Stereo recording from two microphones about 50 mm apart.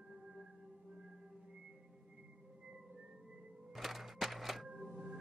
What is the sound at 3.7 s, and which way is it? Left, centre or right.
Music, centre.